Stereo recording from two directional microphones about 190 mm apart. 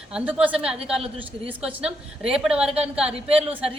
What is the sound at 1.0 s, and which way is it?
Speech, 30° right (ahead or behind).